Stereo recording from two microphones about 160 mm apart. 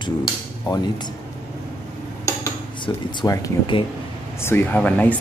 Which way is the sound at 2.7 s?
30° left (ahead or behind).